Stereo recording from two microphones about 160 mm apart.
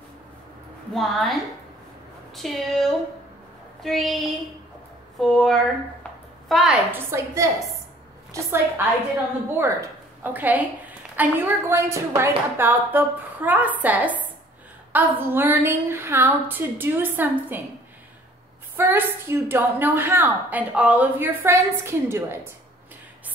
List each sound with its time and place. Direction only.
0.9 s a woman's voice: centre (ahead or behind)
18.8 s a woman's voice: 15° right (ahead or behind)